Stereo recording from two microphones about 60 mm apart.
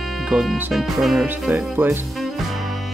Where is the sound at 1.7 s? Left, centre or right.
Right.